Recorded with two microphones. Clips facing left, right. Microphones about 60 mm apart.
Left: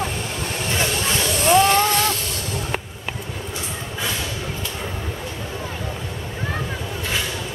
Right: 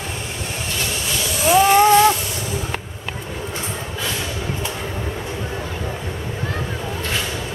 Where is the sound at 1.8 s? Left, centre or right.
Right.